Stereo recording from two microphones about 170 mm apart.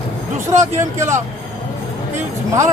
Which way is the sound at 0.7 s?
15° right (ahead or behind).